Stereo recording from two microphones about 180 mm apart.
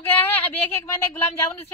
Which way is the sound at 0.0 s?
10° left (ahead or behind).